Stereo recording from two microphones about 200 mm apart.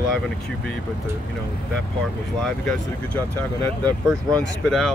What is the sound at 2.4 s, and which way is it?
Speech, 5° left (ahead or behind).